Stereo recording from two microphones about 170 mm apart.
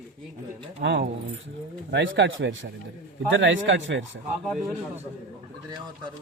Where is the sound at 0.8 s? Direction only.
85° right.